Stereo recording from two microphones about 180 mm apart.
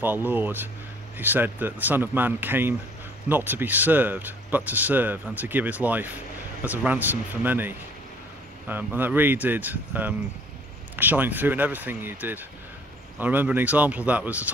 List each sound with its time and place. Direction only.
0.0 s speech: 10° right (ahead or behind)